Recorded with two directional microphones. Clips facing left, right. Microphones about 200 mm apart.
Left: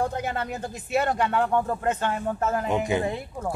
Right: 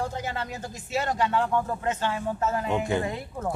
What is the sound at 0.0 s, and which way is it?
Speech, 55° left (ahead or behind).